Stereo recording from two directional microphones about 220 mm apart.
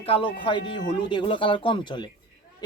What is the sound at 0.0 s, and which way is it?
Speech, 25° left (ahead or behind).